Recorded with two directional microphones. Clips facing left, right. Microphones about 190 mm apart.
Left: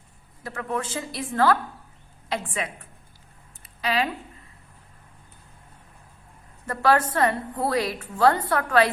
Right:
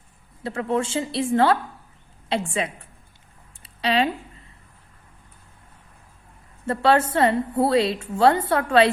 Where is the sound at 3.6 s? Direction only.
30° right (ahead or behind).